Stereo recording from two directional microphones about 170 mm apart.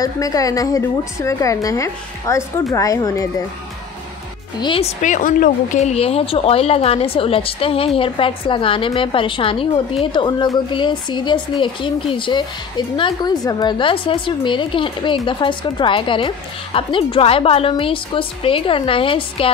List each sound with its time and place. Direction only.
0.0 s speech: 20° left (ahead or behind)
4.6 s speech: 30° left (ahead or behind)
5.0 s speech: 50° left (ahead or behind); by 19.5 s 30° left (ahead or behind)